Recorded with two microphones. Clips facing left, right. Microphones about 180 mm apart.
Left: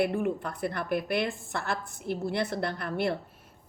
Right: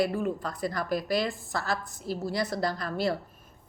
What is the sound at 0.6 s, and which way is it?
Speech, 60° left (ahead or behind).